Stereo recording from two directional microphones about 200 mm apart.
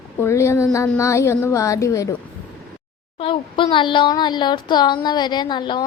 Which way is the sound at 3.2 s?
25° left (ahead or behind).